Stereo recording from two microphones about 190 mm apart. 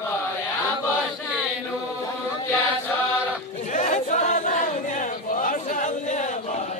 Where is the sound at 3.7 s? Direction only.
40° left (ahead or behind).